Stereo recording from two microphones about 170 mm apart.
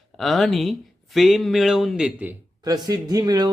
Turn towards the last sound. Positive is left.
turn(degrees=-20)  # may be behind; listen again after turning